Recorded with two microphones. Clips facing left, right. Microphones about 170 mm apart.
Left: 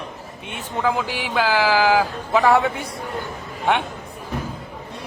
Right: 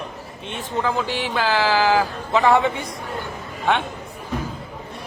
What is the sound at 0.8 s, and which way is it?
A man's voice, 10° left (ahead or behind).